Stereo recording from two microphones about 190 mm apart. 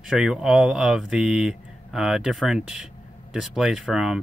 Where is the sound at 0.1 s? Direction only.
5° right (ahead or behind).